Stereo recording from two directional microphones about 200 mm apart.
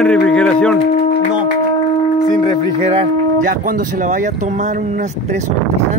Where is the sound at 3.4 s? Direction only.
40° right (ahead or behind).